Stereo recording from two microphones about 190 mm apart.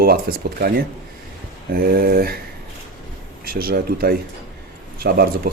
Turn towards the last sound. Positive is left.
turn(degrees=-55)  # may be behind; listen again after turning